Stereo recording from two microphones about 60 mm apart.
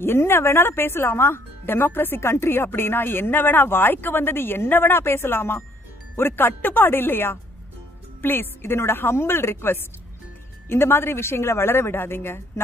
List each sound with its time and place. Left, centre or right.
0.0 s speech: left